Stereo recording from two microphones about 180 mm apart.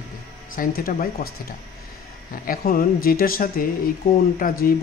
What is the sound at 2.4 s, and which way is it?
Speech, 55° left (ahead or behind).